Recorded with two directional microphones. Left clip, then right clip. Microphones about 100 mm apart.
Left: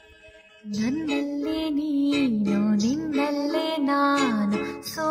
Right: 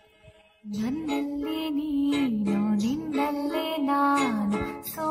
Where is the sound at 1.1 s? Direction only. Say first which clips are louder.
Left 3 dB; 15° left (ahead or behind).